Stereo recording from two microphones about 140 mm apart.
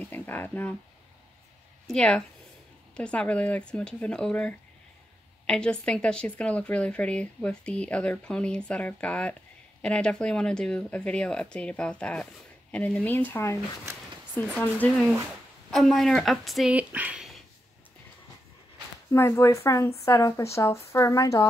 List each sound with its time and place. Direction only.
0.0 s speech: 10° left (ahead or behind)
1.9 s speech: 5° left (ahead or behind)
15.7 s speech: centre (ahead or behind)
16.7 s speech: 10° right (ahead or behind)
19.1 s a woman's voice: 20° left (ahead or behind)